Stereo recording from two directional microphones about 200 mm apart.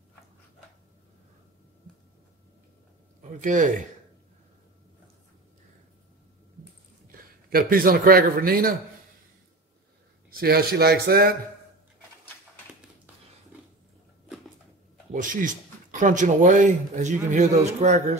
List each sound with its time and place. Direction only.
3.3 s speech: 40° right (ahead or behind)
7.4 s a man's voice: 45° right (ahead or behind)
10.4 s a man's voice: 50° right (ahead or behind)
15.1 s speech: 40° right (ahead or behind)